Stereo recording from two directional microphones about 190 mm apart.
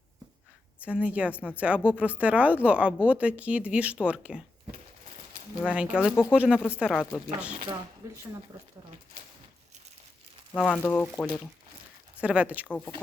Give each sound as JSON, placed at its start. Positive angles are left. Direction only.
{"t": 0.8, "sound": "speech", "side_deg": -5}
{"t": 5.6, "sound": "speech", "side_deg": -5}
{"t": 8.0, "sound": "speech", "side_deg": -15}
{"t": 10.5, "sound": "speech", "side_deg": 10}
{"t": 12.2, "sound": "speech", "side_deg": -5}